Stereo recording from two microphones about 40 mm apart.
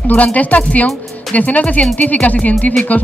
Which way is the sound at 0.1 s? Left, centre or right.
Left.